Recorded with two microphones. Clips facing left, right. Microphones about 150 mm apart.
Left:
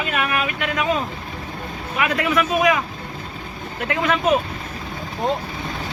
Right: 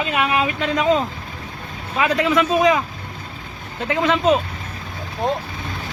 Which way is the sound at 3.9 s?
25° right (ahead or behind).